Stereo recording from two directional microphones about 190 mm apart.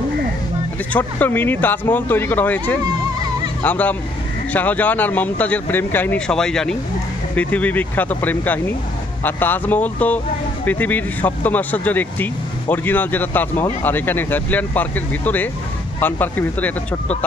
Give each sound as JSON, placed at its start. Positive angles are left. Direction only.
{"t": 0.9, "sound": "speech", "side_deg": 10}